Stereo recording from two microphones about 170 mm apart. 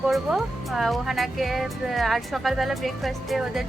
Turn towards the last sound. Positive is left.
turn(degrees=0)  # may be behind; listen again after turning